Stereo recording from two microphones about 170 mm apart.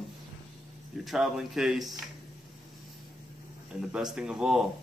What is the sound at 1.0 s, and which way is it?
Speech, centre (ahead or behind).